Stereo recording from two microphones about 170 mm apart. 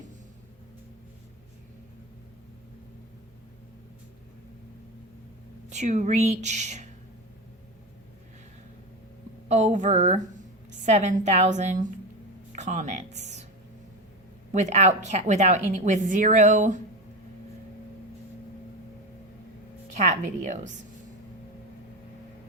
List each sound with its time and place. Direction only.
5.7 s a woman's voice: 45° right (ahead or behind)
9.5 s a woman's voice: 40° right (ahead or behind)
14.5 s a woman's voice: 45° right (ahead or behind)
20.0 s a woman's voice: 45° right (ahead or behind)